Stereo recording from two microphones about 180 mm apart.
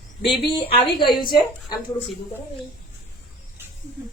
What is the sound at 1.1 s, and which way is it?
Speech, 25° left (ahead or behind).